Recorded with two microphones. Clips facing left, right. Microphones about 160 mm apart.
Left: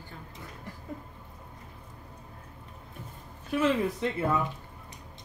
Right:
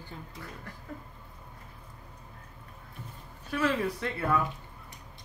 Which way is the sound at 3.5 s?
20° left (ahead or behind).